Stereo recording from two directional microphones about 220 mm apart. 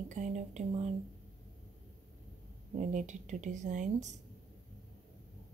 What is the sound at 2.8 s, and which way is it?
Speech, 35° right (ahead or behind).